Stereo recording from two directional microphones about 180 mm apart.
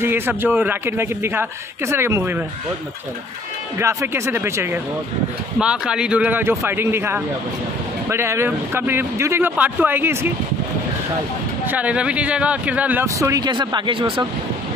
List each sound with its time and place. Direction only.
0.0 s speech: 10° right (ahead or behind)
3.7 s speech: 15° right (ahead or behind)
11.6 s speech: 10° right (ahead or behind); by 14.2 s 30° right (ahead or behind)